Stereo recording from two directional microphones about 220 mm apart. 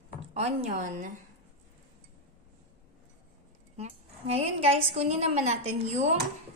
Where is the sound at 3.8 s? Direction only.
30° right (ahead or behind).